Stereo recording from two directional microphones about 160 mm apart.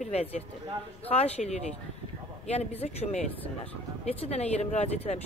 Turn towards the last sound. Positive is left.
turn(degrees=40)  # may be behind; listen again after turning